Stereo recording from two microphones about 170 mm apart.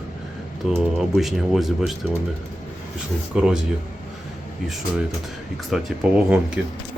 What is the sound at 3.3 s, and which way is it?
Speech, 5° right (ahead or behind).